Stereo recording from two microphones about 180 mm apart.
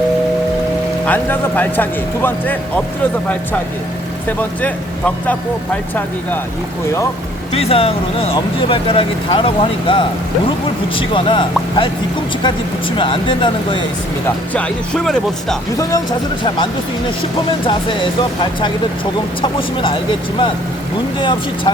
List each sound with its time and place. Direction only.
1.0 s speech: 10° left (ahead or behind)
4.3 s speech: 10° left (ahead or behind)
7.5 s speech: 35° left (ahead or behind)
13.0 s speech: 25° left (ahead or behind)
14.5 s speech: 5° left (ahead or behind)
17.7 s speech: 25° left (ahead or behind)
21.2 s speech: 25° left (ahead or behind)